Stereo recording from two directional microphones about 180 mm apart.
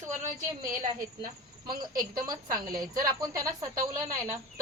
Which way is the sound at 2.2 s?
20° right (ahead or behind).